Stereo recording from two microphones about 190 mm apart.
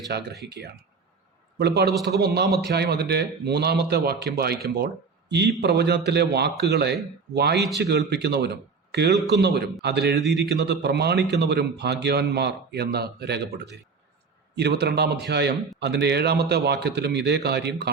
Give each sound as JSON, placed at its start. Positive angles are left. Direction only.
{"t": 0.1, "sound": "a man's voice", "side_deg": -60}